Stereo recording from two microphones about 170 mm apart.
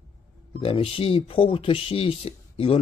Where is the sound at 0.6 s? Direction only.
35° left (ahead or behind).